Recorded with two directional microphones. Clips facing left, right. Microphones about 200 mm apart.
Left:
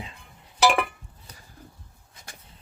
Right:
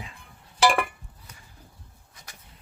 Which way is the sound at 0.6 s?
5° left (ahead or behind).